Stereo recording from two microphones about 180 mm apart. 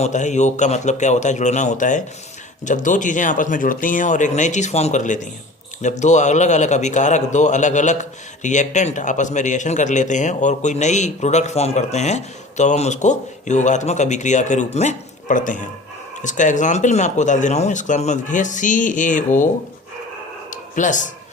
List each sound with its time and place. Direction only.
0.0 s a man's voice: 40° left (ahead or behind)
20.7 s speech: 45° left (ahead or behind)